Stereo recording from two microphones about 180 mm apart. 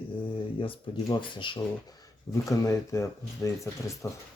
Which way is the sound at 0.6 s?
25° left (ahead or behind).